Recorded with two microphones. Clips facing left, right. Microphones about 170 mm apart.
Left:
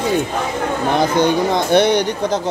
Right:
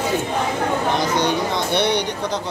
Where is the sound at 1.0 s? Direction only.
50° left (ahead or behind).